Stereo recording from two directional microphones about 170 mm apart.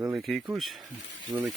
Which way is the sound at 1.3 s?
15° right (ahead or behind).